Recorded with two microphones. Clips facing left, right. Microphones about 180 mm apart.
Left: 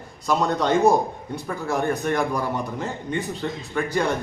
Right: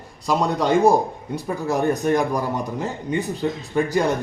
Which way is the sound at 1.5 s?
20° right (ahead or behind).